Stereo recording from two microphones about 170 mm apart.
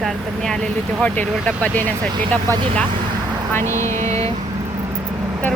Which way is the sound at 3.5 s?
15° left (ahead or behind).